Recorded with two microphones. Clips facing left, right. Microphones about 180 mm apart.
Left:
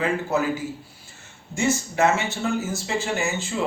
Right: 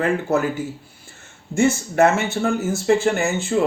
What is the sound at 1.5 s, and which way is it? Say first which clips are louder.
Speech: right 5 dB; 55° right (ahead or behind).